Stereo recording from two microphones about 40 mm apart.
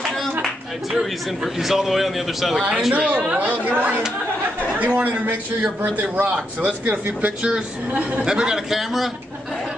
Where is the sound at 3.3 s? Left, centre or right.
Right.